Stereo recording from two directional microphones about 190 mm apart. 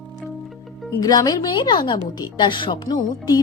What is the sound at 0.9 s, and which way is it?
A woman's voice, 20° left (ahead or behind).